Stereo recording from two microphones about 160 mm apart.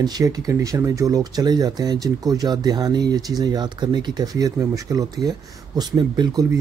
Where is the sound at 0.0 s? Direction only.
25° right (ahead or behind).